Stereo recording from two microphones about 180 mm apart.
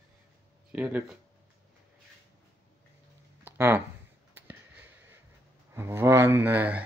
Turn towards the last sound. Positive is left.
turn(degrees=-10)  # may be behind; listen again after turning